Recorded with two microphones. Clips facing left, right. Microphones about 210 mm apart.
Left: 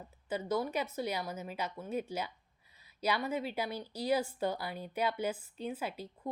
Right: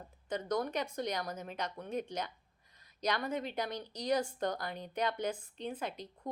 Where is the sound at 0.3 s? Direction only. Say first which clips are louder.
Left 1 dB; 5° left (ahead or behind).